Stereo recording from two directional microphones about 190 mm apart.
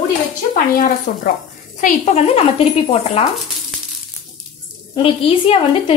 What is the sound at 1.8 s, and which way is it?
Speech, 35° left (ahead or behind).